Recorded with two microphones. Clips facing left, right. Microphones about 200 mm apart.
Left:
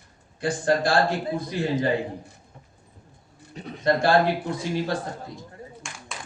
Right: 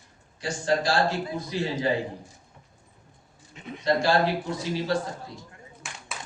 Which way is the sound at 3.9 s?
55° left (ahead or behind).